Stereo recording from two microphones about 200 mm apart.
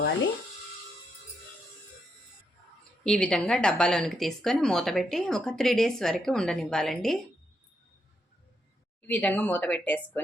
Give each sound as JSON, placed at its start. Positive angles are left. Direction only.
{"t": 3.0, "sound": "speech", "side_deg": 5}
{"t": 9.0, "sound": "speech", "side_deg": 5}